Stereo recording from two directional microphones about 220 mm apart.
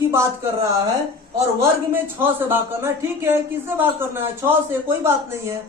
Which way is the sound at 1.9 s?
10° right (ahead or behind).